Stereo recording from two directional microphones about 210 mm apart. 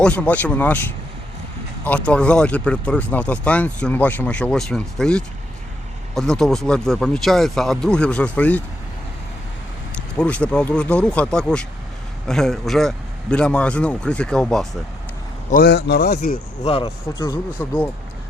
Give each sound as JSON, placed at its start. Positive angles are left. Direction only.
{"t": 0.0, "sound": "speech", "side_deg": 5}
{"t": 1.8, "sound": "speech", "side_deg": 5}
{"t": 10.2, "sound": "speech", "side_deg": 5}
{"t": 15.4, "sound": "speech", "side_deg": 45}
{"t": 16.6, "sound": "speech", "side_deg": 20}